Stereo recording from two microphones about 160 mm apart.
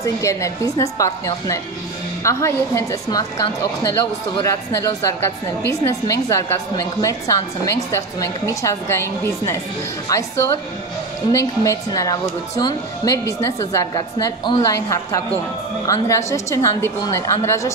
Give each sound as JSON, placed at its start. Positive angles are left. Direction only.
{"t": 0.0, "sound": "speech", "side_deg": 20}
{"t": 11.3, "sound": "speech", "side_deg": 20}